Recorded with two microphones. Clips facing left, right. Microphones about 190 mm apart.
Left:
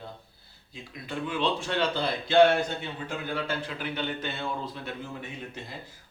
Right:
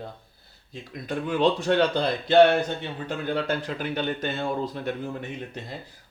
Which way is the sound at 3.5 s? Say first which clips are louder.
Right 5 dB; 40° right (ahead or behind).